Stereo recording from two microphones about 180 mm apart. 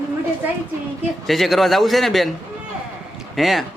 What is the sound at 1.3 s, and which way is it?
A man's voice, centre (ahead or behind).